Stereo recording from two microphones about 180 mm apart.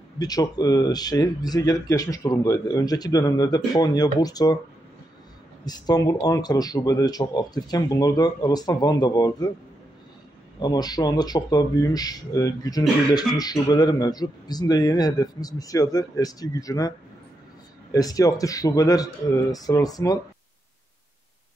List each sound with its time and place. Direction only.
0.2 s speech: 20° left (ahead or behind)
5.7 s speech: 20° left (ahead or behind)
10.6 s speech: 20° left (ahead or behind)
17.9 s speech: 20° left (ahead or behind)